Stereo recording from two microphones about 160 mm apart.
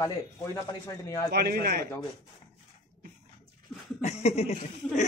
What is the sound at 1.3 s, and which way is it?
Speech, 80° right.